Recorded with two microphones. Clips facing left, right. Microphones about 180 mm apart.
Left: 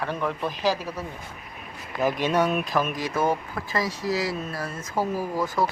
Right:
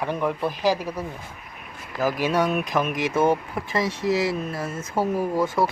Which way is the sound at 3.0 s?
25° right (ahead or behind).